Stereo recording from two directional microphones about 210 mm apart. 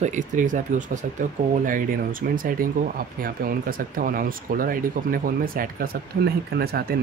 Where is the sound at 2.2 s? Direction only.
45° right (ahead or behind).